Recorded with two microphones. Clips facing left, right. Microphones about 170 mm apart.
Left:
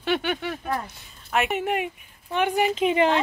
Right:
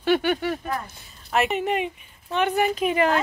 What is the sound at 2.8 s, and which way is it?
Speech, 25° left (ahead or behind).